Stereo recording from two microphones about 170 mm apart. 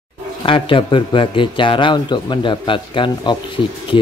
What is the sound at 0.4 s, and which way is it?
Speech, 30° left (ahead or behind).